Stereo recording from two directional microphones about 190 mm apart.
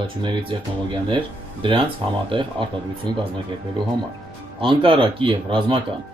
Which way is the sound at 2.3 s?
25° right (ahead or behind).